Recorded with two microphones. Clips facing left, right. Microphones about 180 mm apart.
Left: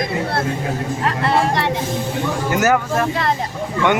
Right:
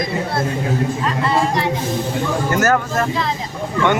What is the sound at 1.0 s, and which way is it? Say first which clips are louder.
Speech: left 3 dB; 65° left (ahead or behind).